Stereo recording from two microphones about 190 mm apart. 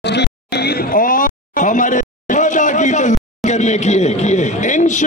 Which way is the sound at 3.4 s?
40° left (ahead or behind).